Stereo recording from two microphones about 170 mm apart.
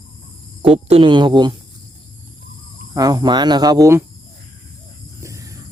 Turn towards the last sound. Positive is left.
turn(degrees=-20)  # may be behind; listen again after turning